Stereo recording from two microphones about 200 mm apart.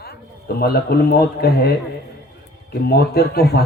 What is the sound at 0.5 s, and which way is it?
A man's voice, 50° left (ahead or behind).